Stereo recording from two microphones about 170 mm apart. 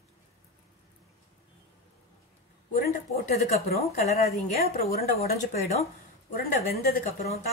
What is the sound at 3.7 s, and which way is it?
Speech, 40° left (ahead or behind).